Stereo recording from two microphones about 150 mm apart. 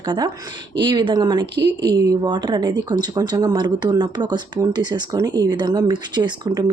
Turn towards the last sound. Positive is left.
turn(degrees=-30)  # may be behind; listen again after turning